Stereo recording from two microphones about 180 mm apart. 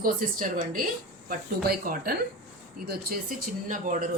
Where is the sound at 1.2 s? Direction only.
55° right (ahead or behind).